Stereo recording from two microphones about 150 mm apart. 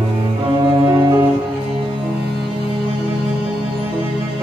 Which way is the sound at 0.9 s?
25° right (ahead or behind).